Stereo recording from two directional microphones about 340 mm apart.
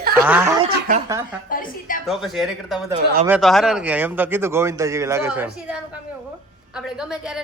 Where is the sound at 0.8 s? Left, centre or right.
Right.